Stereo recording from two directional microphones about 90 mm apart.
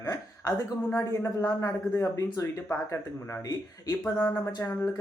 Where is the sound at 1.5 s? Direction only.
40° left (ahead or behind).